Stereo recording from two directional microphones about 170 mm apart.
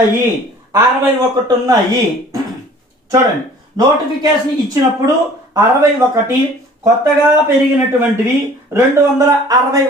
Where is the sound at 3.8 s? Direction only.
25° right (ahead or behind).